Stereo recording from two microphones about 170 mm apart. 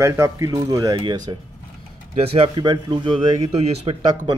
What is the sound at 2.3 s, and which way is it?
Speech, 25° right (ahead or behind).